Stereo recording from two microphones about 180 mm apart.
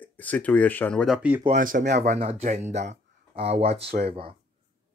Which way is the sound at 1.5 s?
50° right (ahead or behind).